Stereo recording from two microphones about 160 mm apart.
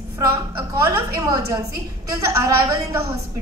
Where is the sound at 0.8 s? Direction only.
20° right (ahead or behind).